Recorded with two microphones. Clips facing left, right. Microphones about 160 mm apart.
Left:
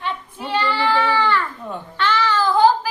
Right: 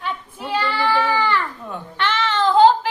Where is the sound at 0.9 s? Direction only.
15° right (ahead or behind).